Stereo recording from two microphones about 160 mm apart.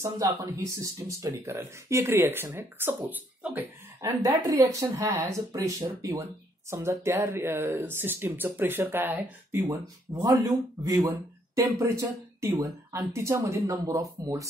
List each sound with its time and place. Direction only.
0.0 s speech: 20° right (ahead or behind)